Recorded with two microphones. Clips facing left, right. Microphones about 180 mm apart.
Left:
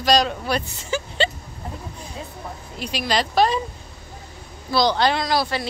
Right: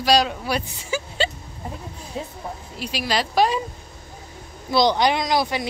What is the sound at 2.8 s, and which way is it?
Speech, 5° right (ahead or behind).